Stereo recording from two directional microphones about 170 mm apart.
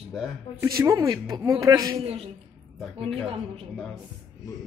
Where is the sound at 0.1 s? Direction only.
Centre (ahead or behind).